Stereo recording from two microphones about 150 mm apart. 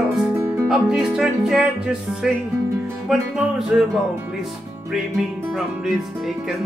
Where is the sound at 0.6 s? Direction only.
5° right (ahead or behind).